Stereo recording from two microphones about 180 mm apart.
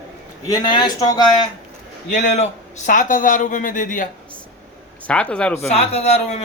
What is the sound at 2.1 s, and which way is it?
Speech, 40° left (ahead or behind).